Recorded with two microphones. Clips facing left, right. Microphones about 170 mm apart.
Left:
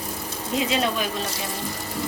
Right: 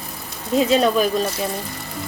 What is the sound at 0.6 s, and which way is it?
Speech, 40° right (ahead or behind).